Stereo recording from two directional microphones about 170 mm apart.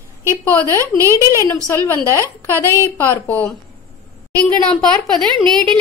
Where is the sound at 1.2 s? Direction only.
20° left (ahead or behind).